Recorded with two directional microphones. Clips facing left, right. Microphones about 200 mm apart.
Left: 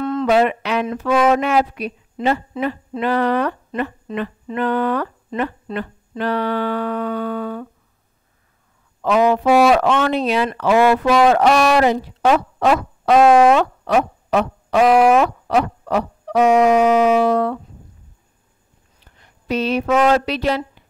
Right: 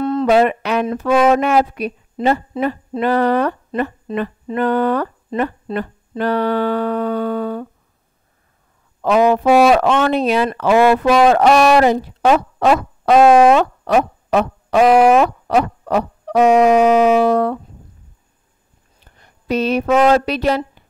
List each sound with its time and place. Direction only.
0.0 s a sound: 35° right (ahead or behind)
0.8 s speech: 40° right (ahead or behind)
9.0 s speech: 45° right (ahead or behind)
9.5 s speech: 30° right (ahead or behind)
9.8 s speech: 45° right (ahead or behind)
10.8 s speech: 25° right (ahead or behind)
11.2 s speech: 40° right (ahead or behind)
14.9 s speech: 30° right (ahead or behind)
15.5 s a sound: 45° right (ahead or behind)
16.4 s speech: 25° right (ahead or behind)
17.2 s speech: 45° right (ahead or behind)
19.1 s a sound: 45° right (ahead or behind)
20.1 s speech: 45° right (ahead or behind)